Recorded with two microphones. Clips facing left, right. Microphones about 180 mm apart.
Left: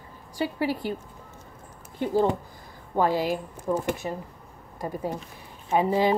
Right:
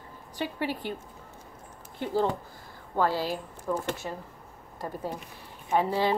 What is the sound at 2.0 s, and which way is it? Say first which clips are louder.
Speech: left 4 dB; 15° left (ahead or behind).